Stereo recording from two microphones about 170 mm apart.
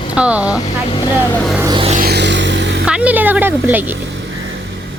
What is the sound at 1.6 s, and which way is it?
Music, 25° right (ahead or behind).